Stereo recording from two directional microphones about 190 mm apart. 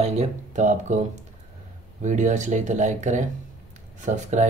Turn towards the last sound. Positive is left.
turn(degrees=-40)  # may be behind; listen again after turning